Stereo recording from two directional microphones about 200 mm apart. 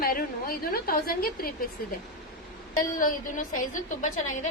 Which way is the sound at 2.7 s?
40° left (ahead or behind).